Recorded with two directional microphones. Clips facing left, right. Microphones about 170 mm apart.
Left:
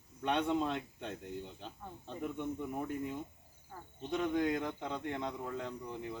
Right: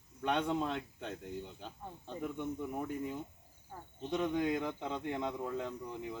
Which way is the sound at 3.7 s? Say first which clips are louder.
Right 1 dB; 25° right (ahead or behind).